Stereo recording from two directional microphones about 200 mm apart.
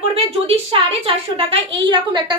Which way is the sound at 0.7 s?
30° right (ahead or behind).